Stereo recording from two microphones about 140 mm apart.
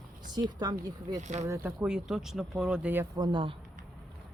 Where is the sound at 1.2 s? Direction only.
55° right (ahead or behind).